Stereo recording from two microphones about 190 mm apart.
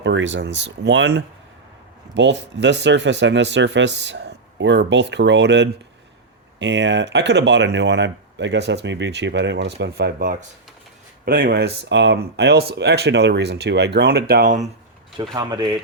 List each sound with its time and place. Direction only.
0.0 s speech: 75° right (ahead or behind); by 14.7 s 40° right (ahead or behind)
15.2 s speech: 20° right (ahead or behind)